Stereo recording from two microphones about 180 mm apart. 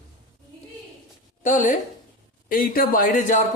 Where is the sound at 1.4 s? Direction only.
45° left (ahead or behind).